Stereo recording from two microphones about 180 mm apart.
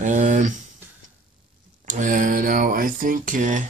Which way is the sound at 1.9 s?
45° right (ahead or behind).